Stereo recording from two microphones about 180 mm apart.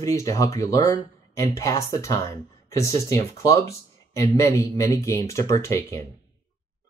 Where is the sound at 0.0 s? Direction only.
15° left (ahead or behind).